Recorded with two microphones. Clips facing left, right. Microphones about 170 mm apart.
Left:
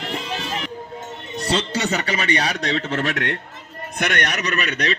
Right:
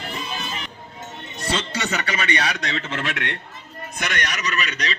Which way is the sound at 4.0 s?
60° left (ahead or behind).